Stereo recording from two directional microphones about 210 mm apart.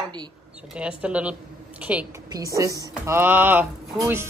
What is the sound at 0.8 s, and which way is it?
A woman's voice, 5° right (ahead or behind).